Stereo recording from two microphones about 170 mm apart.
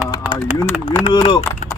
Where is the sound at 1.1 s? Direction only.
25° left (ahead or behind).